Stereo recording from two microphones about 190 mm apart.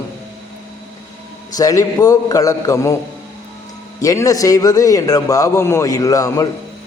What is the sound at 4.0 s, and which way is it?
A man's voice, 15° left (ahead or behind).